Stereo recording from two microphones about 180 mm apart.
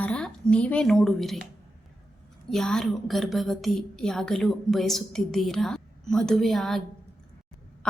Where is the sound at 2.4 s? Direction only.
Centre (ahead or behind).